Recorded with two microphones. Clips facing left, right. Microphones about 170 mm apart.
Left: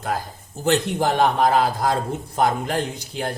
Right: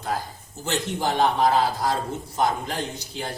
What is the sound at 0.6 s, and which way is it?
A man's voice, 55° left (ahead or behind).